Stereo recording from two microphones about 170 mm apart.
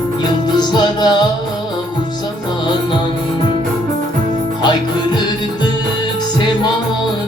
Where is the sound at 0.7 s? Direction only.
25° left (ahead or behind).